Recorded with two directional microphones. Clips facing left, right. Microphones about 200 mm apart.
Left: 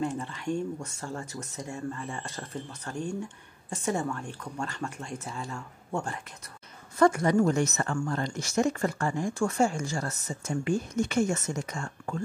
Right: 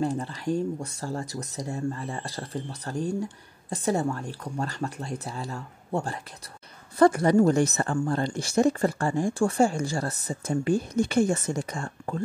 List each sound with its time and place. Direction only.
0.0 s speech: 35° right (ahead or behind)